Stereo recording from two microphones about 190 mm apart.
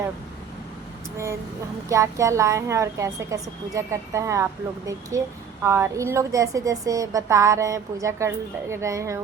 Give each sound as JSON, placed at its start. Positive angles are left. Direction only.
{"t": 1.1, "sound": "a woman's voice", "side_deg": -15}